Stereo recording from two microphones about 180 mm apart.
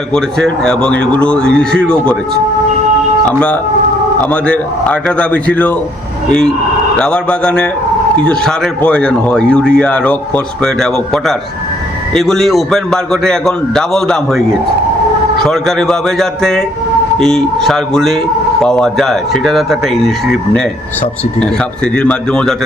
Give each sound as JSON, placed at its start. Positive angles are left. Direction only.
{"t": 0.1, "sound": "speech", "side_deg": 5}
{"t": 3.2, "sound": "a man's voice", "side_deg": 5}
{"t": 6.9, "sound": "speech", "side_deg": 5}
{"t": 15.4, "sound": "speech", "side_deg": 5}
{"t": 21.9, "sound": "speech", "side_deg": 5}